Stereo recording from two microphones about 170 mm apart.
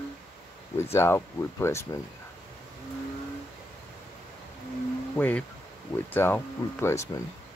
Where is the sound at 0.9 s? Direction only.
15° left (ahead or behind).